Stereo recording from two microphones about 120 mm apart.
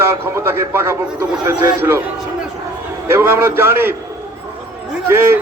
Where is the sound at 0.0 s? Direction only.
20° right (ahead or behind).